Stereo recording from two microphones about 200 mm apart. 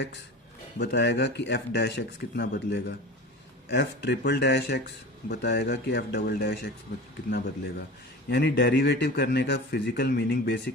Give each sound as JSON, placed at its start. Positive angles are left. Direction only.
{"t": 0.8, "sound": "speech", "side_deg": 55}